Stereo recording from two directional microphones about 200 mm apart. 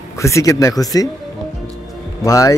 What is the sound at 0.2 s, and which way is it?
Speech, 15° left (ahead or behind).